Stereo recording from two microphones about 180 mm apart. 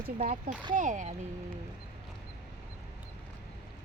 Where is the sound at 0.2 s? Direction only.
50° right (ahead or behind).